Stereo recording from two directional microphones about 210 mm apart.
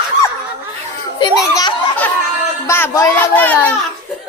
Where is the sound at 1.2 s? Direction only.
20° left (ahead or behind).